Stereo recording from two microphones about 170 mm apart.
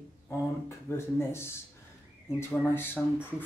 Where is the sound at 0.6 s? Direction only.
15° left (ahead or behind).